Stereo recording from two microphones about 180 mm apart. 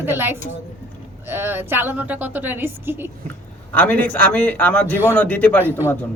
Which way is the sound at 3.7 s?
10° left (ahead or behind).